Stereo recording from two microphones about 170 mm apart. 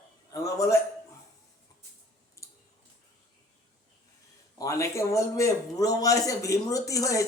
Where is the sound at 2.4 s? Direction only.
15° left (ahead or behind).